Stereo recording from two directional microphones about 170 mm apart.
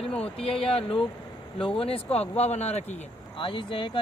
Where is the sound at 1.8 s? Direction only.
35° left (ahead or behind).